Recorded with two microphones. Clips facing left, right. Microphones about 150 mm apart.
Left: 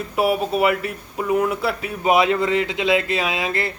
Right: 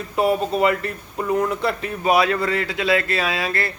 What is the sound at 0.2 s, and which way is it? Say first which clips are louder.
A man's voice: even; 5° left (ahead or behind).